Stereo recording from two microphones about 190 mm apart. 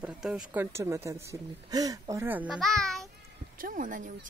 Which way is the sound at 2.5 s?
Centre (ahead or behind).